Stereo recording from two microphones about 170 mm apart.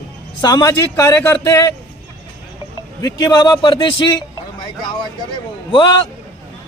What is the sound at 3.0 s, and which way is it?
A man's voice, 25° left (ahead or behind).